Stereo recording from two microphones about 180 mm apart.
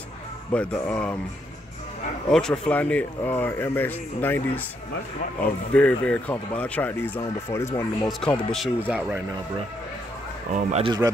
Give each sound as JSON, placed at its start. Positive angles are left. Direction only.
{"t": 0.5, "sound": "speech", "side_deg": 10}
{"t": 2.3, "sound": "speech", "side_deg": 5}
{"t": 5.7, "sound": "speech", "side_deg": 5}
{"t": 8.1, "sound": "speech", "side_deg": 5}
{"t": 8.8, "sound": "speech", "side_deg": -10}
{"t": 10.5, "sound": "speech", "side_deg": -40}